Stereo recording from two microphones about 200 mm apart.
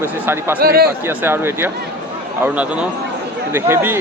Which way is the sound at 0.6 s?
50° right (ahead or behind).